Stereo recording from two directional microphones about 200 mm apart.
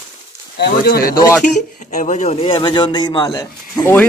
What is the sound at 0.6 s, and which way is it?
Speech, 50° left (ahead or behind).